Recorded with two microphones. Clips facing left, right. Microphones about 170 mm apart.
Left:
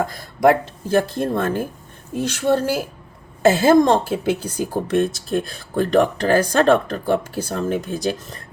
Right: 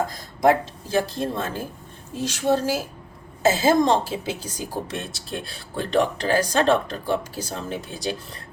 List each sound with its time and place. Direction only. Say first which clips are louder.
0.0 s a woman's voice: left 3 dB; 60° left (ahead or behind)